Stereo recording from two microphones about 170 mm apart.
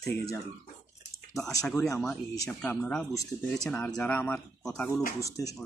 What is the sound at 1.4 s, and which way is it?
Speech, 5° left (ahead or behind).